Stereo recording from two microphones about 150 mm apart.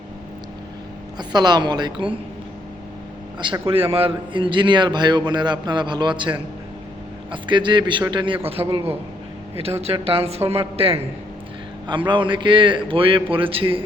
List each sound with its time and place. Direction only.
1.3 s a woman's voice: 30° right (ahead or behind)
3.4 s a man's voice: 35° right (ahead or behind)
9.8 s a man's voice: 40° right (ahead or behind)